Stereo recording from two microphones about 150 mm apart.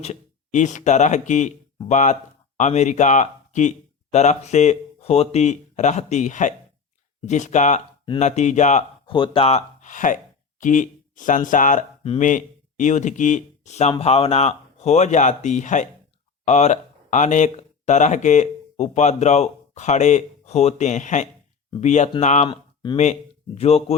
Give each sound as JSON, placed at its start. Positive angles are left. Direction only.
{"t": 0.0, "sound": "speech", "side_deg": 50}
{"t": 9.0, "sound": "speech", "side_deg": 35}
{"t": 22.4, "sound": "a sound", "side_deg": 30}
{"t": 23.6, "sound": "speech", "side_deg": 45}